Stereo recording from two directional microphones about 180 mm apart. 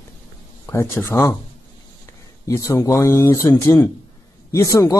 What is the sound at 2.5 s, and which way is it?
A man's voice, 15° left (ahead or behind).